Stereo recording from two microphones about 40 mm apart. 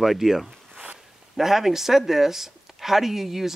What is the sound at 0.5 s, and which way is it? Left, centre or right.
Zipper, right.